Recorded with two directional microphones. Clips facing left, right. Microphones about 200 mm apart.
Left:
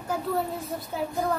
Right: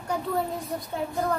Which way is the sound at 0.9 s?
5° left (ahead or behind).